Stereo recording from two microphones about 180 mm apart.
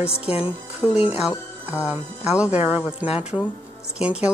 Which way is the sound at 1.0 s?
5° right (ahead or behind).